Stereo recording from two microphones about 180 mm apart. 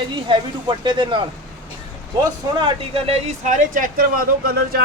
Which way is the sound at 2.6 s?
35° right (ahead or behind).